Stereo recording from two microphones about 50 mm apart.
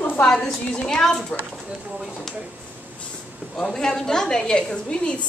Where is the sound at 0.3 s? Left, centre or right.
Centre.